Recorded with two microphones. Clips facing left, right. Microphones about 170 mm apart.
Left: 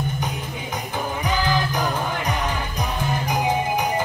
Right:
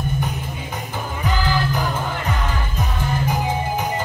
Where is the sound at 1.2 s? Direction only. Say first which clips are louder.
Right 1 dB; 15° left (ahead or behind).